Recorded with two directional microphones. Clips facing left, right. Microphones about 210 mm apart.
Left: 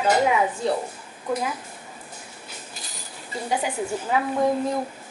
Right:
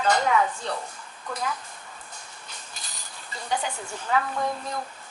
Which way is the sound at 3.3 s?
10° left (ahead or behind).